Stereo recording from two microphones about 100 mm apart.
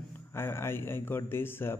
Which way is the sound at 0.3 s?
25° left (ahead or behind).